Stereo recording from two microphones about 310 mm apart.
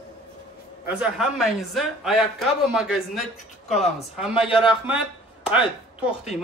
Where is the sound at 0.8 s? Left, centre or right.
Centre.